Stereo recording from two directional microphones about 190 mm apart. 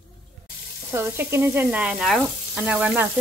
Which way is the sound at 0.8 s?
15° right (ahead or behind).